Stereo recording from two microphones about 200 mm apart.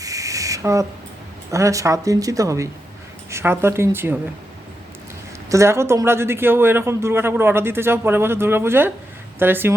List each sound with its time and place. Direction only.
0.0 s a sound: 15° right (ahead or behind)
1.5 s a man's voice: 15° right (ahead or behind)
5.5 s a man's voice: 15° right (ahead or behind)